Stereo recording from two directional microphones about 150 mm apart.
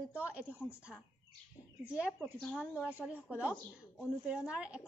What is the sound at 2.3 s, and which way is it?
Speech, 5° left (ahead or behind).